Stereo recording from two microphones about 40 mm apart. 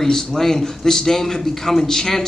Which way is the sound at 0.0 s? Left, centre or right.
Centre.